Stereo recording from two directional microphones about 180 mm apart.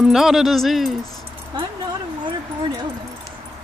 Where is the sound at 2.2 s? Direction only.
25° right (ahead or behind).